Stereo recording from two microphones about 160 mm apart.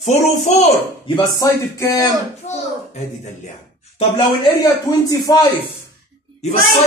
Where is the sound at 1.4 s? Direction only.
20° left (ahead or behind).